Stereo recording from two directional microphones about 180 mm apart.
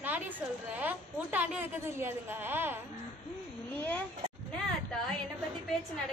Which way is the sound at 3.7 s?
10° left (ahead or behind).